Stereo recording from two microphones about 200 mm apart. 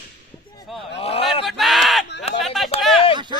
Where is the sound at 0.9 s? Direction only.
30° left (ahead or behind).